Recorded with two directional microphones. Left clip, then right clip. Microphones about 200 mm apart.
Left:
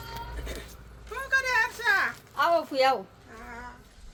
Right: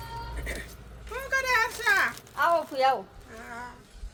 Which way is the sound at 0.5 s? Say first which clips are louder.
Right 3 dB; centre (ahead or behind).